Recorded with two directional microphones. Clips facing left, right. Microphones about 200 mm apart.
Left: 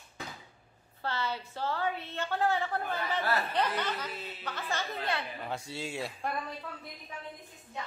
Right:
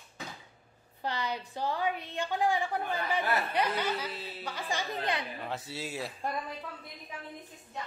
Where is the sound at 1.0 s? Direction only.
15° right (ahead or behind).